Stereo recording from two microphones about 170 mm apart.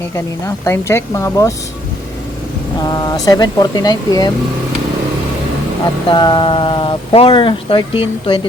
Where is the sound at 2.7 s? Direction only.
25° left (ahead or behind).